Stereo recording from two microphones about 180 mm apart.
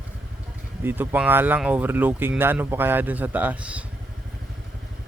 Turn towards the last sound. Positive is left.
turn(degrees=-5)  # may be behind; listen again after turning